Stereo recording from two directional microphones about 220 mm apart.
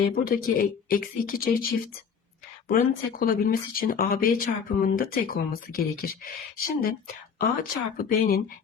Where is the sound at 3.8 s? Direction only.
40° left (ahead or behind).